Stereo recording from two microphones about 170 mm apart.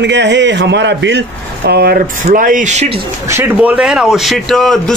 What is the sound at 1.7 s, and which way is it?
Speech, 65° right (ahead or behind).